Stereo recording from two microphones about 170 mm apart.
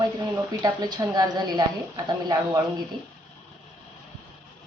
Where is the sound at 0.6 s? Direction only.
20° right (ahead or behind).